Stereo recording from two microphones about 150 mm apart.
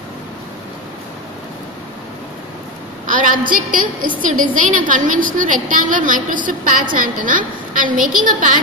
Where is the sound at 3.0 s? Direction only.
60° right (ahead or behind).